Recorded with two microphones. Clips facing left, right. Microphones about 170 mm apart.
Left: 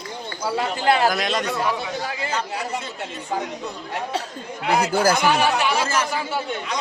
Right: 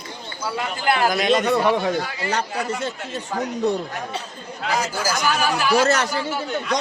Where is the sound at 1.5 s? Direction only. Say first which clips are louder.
Right 6 dB; 65° right (ahead or behind).